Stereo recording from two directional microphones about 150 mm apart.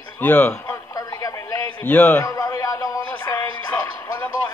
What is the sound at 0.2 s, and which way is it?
Speech, 10° left (ahead or behind).